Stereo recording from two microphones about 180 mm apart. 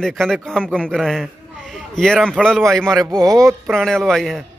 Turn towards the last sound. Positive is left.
turn(degrees=0)  # may be behind; listen again after turning